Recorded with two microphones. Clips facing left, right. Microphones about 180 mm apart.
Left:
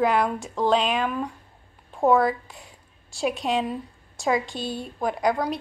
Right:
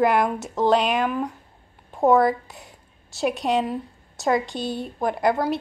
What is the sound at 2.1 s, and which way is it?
A woman's voice, centre (ahead or behind).